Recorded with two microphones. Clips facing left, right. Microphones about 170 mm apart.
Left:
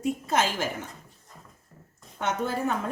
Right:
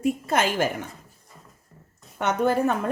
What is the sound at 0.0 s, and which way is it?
Speech, 60° right (ahead or behind).